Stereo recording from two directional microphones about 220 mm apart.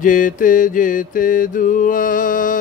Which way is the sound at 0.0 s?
35° left (ahead or behind).